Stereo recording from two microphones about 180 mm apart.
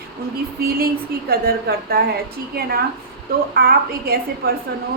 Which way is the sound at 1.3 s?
60° right (ahead or behind).